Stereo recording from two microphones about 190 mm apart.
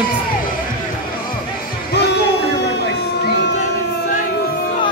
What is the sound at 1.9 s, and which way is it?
Music, 65° left (ahead or behind).